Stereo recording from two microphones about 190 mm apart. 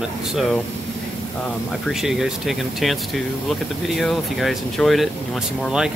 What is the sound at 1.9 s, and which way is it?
Speech, centre (ahead or behind).